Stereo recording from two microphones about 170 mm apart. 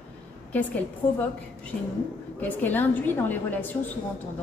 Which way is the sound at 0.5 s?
10° left (ahead or behind).